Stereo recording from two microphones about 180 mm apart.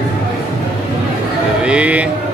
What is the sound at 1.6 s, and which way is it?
Speech, 5° right (ahead or behind).